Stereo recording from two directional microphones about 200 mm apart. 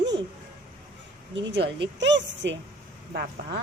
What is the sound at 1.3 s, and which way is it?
A woman's voice, 65° right (ahead or behind).